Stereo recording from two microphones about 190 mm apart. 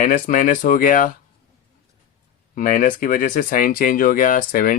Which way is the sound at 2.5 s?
45° left (ahead or behind).